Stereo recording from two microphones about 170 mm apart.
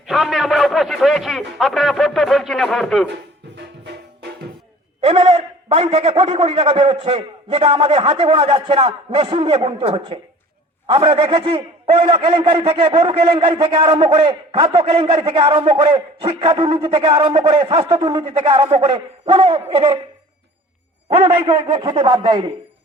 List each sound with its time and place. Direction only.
0.1 s a man's voice: centre (ahead or behind)
4.9 s a man's voice: 40° right (ahead or behind)
21.1 s a man's voice: 30° right (ahead or behind)